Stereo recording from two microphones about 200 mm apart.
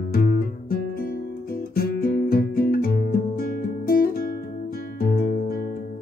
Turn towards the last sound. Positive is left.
turn(degrees=50)  # may be behind; listen again after turning